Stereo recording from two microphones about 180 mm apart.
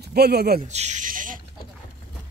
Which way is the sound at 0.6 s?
40° right (ahead or behind).